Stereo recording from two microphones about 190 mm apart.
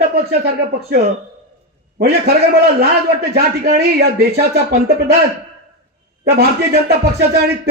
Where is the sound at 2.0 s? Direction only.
55° right (ahead or behind).